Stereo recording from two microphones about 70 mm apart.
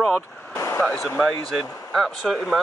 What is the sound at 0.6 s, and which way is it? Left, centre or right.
Speech, left.